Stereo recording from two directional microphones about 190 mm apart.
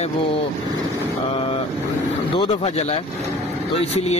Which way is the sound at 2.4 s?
30° left (ahead or behind).